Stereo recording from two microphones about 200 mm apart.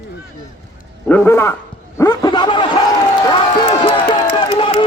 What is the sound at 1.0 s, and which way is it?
Speech, 10° left (ahead or behind).